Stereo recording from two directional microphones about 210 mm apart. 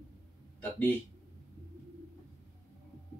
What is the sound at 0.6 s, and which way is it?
Speech, 10° left (ahead or behind).